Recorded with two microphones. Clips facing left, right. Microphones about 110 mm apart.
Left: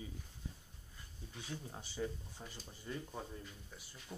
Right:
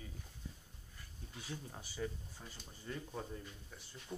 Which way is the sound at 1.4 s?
25° left (ahead or behind).